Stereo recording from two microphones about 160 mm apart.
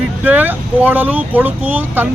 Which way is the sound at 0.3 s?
10° right (ahead or behind).